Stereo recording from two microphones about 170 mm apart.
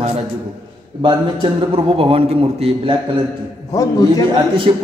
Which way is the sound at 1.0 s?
30° right (ahead or behind).